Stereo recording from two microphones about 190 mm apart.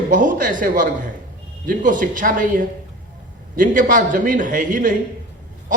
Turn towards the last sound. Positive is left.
turn(degrees=-45)  # may be behind; listen again after turning